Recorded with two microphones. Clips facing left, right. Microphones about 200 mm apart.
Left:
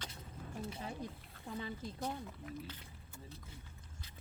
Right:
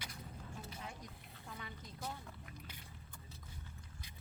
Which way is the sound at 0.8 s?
30° left (ahead or behind).